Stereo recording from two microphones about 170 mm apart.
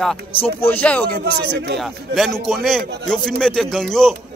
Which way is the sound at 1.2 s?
70° right (ahead or behind).